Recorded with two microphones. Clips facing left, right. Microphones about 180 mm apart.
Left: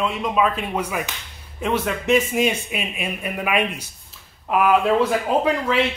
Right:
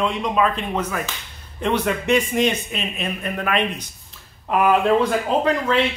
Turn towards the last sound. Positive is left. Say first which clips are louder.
# right 1 dB
turn(degrees=10)  # may be behind; listen again after turning